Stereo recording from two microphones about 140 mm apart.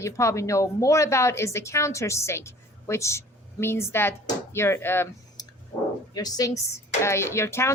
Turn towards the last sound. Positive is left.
turn(degrees=20)  # may be behind; listen again after turning